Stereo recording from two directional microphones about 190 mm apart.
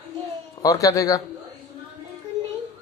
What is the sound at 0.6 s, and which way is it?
Speech, 15° left (ahead or behind).